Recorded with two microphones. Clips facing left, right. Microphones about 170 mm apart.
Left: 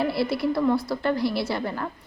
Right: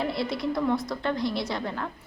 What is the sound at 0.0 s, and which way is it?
A woman's voice, 5° left (ahead or behind).